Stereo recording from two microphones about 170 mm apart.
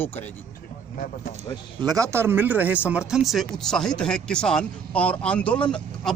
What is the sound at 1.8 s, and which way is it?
A man's voice, 20° right (ahead or behind).